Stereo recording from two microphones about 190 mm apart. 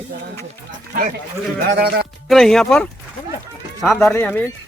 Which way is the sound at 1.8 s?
50° right (ahead or behind).